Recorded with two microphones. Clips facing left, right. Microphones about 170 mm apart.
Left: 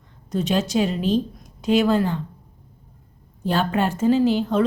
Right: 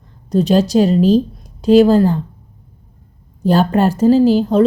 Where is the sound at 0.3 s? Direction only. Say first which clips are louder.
Right 9 dB; 35° right (ahead or behind).